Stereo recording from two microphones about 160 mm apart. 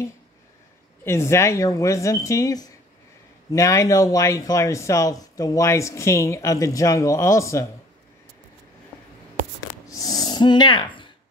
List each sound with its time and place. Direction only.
1.0 s speech: 15° left (ahead or behind)
9.8 s snort: 20° left (ahead or behind)